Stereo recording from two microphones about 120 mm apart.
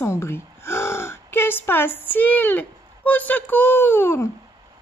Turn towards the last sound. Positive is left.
turn(degrees=20)  # may be behind; listen again after turning